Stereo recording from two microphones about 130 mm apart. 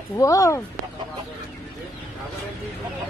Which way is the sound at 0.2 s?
25° left (ahead or behind).